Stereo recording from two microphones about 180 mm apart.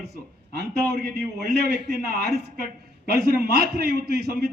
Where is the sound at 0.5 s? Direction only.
60° right (ahead or behind).